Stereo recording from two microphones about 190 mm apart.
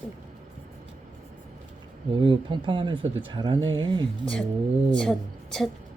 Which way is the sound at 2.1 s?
25° right (ahead or behind).